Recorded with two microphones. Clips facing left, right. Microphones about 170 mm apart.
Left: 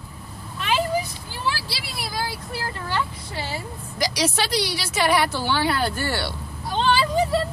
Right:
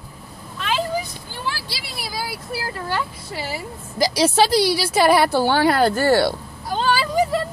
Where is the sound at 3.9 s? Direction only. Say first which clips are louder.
Right 7 dB; 30° right (ahead or behind).